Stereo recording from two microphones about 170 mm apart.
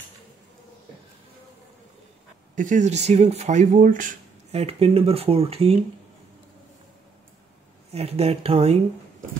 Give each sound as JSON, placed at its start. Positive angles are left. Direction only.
{"t": 2.5, "sound": "speech", "side_deg": -50}
{"t": 4.6, "sound": "speech", "side_deg": -35}
{"t": 7.9, "sound": "speech", "side_deg": -35}